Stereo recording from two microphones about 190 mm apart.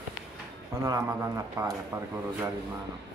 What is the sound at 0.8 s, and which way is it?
Speech, 15° right (ahead or behind).